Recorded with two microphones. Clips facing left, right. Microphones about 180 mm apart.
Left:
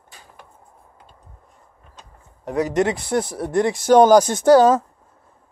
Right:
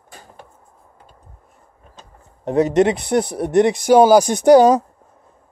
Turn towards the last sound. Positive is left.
turn(degrees=-15)  # may be behind; listen again after turning